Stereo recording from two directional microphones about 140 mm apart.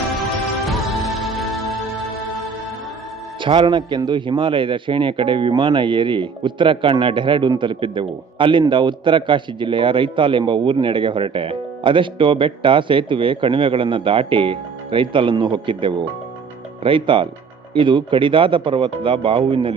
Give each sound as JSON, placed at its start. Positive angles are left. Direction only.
{"t": 0.2, "sound": "music", "side_deg": 0}
{"t": 3.4, "sound": "a man's voice", "side_deg": -35}